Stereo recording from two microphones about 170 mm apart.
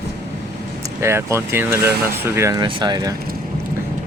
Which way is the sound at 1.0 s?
15° right (ahead or behind).